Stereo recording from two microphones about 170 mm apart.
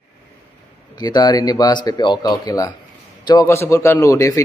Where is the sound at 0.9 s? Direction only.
25° left (ahead or behind).